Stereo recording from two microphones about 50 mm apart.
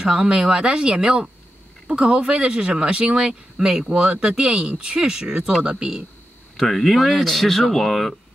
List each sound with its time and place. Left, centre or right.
0.0 s speech: centre
6.5 s speech: centre